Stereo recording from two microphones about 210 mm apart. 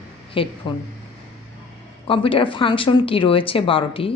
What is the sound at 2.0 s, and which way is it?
Speech, 25° left (ahead or behind).